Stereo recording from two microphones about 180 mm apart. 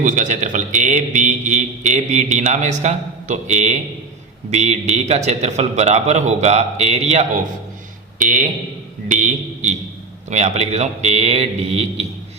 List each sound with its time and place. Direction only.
0.0 s a man's voice: 45° right (ahead or behind)